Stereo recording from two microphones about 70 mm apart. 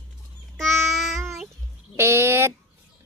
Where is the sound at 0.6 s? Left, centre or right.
Centre.